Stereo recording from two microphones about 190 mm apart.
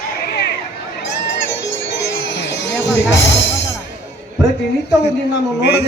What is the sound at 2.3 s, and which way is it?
Music, 65° left (ahead or behind).